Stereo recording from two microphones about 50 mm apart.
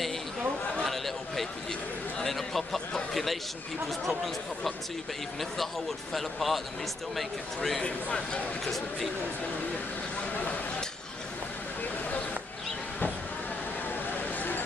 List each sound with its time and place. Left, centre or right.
0.8 s a sound: centre
2.2 s speech: centre
4.0 s speech: centre
6.1 s speech: centre
7.8 s speech: left
8.6 s speech: centre
14.1 s a sound: left